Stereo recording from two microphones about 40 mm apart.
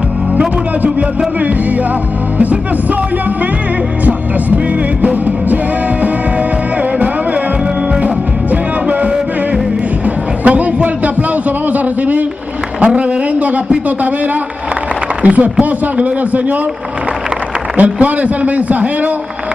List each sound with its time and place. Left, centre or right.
2.3 s music: right
5.0 s music: right
8.0 s music: right
11.7 s a sound: right
15.2 s a man's voice: right
17.7 s a man's voice: right